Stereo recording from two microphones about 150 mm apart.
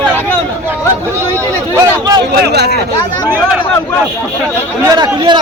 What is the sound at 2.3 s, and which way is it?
Speech, 90° right.